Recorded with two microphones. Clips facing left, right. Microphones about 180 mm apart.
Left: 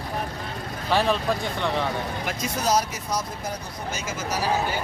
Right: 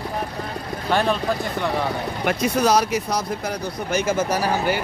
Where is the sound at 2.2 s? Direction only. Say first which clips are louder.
Right 8 dB; 60° right (ahead or behind).